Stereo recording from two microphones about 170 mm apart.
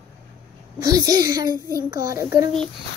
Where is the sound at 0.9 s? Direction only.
20° right (ahead or behind).